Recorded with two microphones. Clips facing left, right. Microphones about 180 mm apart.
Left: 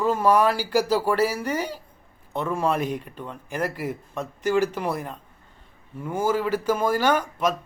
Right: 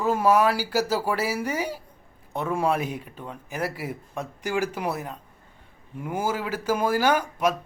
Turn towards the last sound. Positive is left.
turn(degrees=-10)  # may be behind; listen again after turning